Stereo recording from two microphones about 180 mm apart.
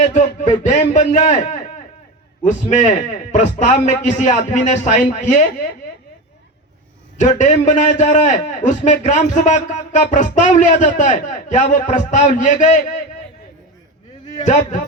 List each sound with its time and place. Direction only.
0.0 s a man's voice: 40° left (ahead or behind)
7.2 s a man's voice: 45° left (ahead or behind)
14.4 s a man's voice: 45° left (ahead or behind)